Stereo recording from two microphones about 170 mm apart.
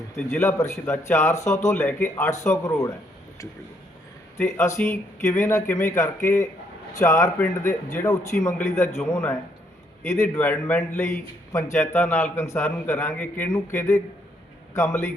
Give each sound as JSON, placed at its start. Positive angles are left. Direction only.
{"t": 0.3, "sound": "a man's voice", "side_deg": 15}
{"t": 4.4, "sound": "a man's voice", "side_deg": 15}